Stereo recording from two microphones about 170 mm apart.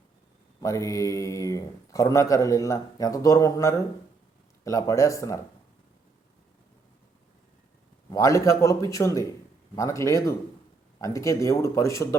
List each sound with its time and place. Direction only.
0.6 s speech: 20° left (ahead or behind)
8.1 s a man's voice: 20° left (ahead or behind)